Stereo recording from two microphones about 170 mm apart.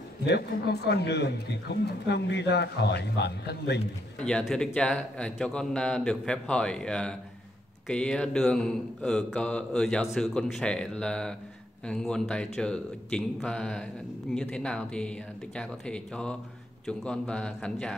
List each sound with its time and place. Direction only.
0.3 s a man's voice: 75° left (ahead or behind)
4.2 s speech: 5° left (ahead or behind)